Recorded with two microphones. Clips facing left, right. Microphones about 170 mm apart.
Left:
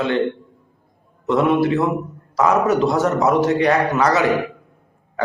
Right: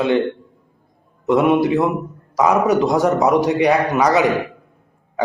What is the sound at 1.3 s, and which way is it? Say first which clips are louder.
A man's voice: right 2 dB; 15° right (ahead or behind).